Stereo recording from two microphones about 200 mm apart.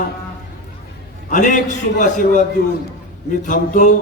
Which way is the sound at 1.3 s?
40° left (ahead or behind).